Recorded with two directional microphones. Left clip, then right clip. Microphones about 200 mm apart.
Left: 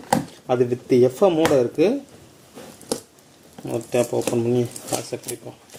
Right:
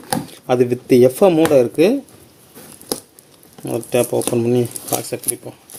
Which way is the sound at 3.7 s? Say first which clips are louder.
Right 4 dB; 25° right (ahead or behind).